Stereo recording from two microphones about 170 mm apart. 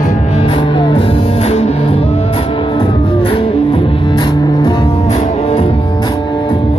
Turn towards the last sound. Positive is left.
turn(degrees=25)  # may be behind; listen again after turning